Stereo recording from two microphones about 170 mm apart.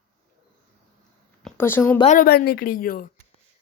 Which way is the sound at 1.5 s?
15° left (ahead or behind).